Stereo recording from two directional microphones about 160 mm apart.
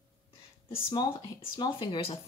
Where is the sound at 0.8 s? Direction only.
25° left (ahead or behind).